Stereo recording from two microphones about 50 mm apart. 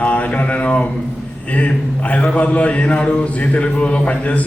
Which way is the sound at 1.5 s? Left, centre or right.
Left.